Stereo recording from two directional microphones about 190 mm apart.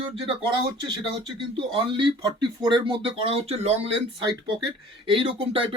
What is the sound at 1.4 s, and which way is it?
Speech, 25° right (ahead or behind).